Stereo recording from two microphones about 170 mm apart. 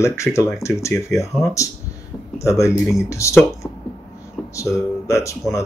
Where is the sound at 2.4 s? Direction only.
15° left (ahead or behind).